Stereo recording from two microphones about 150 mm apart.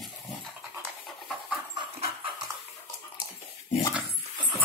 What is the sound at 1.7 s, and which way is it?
Dog, 40° right (ahead or behind).